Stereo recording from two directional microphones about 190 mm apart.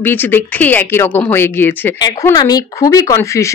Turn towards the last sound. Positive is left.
turn(degrees=15)  # may be behind; listen again after turning